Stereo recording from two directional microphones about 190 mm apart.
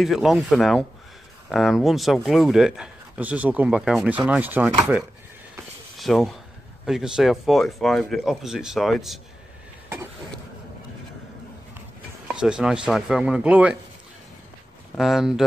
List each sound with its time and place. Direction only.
0.0 s speech: centre (ahead or behind)
5.9 s speech: centre (ahead or behind)
12.4 s speech: 5° right (ahead or behind)
15.0 s speech: centre (ahead or behind)